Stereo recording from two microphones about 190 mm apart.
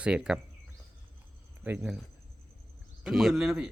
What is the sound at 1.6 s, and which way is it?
Speech, 5° right (ahead or behind).